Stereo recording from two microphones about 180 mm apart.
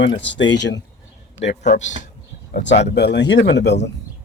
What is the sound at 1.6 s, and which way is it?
Speech, 40° left (ahead or behind).